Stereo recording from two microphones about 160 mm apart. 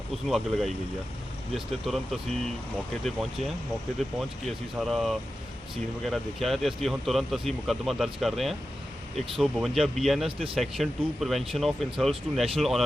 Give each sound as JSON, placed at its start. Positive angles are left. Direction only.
{"t": 0.3, "sound": "speech", "side_deg": 0}